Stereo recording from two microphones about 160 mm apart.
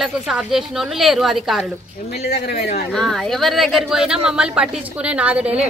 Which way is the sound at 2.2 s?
90° left.